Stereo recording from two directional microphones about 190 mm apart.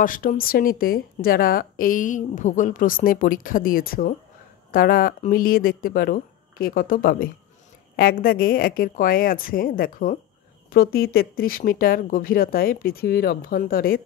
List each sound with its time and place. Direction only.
0.0 s a woman's voice: 45° left (ahead or behind)